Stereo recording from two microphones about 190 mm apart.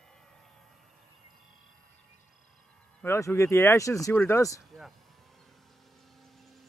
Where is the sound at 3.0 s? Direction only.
15° left (ahead or behind).